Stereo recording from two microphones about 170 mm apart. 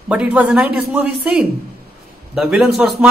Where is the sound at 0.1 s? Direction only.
10° right (ahead or behind).